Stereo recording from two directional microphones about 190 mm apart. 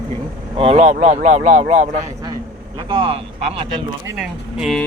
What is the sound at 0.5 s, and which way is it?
Speech, 30° right (ahead or behind).